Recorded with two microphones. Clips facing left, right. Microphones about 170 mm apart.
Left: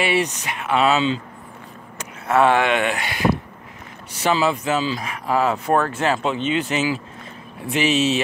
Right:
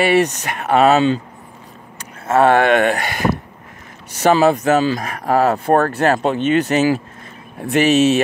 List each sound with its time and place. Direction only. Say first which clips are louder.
0.0 s speech: right 6 dB; 45° right (ahead or behind)
2.4 s speech: right 6 dB; 50° right (ahead or behind)
5.9 s speech: right 5 dB; 55° right (ahead or behind)